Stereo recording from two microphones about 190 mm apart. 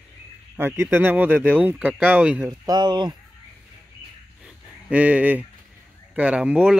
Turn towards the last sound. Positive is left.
turn(degrees=-5)  # may be behind; listen again after turning